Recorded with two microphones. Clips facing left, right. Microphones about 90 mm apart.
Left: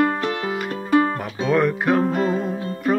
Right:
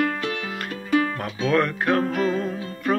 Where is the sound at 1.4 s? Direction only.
5° left (ahead or behind).